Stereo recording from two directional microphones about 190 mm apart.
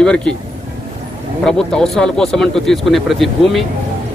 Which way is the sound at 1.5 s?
5° left (ahead or behind).